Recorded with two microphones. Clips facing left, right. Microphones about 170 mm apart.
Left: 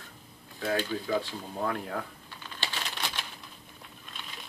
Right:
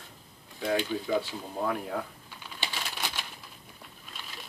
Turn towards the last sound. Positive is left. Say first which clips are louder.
# even
turn(degrees=-10)  # may be behind; listen again after turning